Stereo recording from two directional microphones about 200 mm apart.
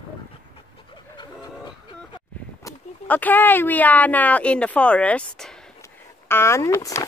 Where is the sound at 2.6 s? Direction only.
10° left (ahead or behind).